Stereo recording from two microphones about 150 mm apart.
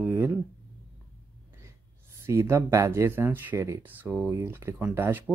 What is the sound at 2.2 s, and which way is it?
Speech, 20° right (ahead or behind).